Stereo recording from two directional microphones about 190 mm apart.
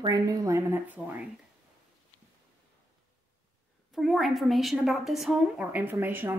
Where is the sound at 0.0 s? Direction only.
20° right (ahead or behind).